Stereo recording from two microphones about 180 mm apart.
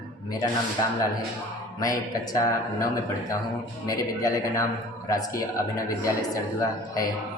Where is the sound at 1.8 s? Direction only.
20° left (ahead or behind).